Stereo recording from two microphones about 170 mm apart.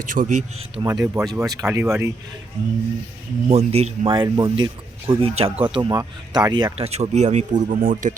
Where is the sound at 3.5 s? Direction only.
40° right (ahead or behind).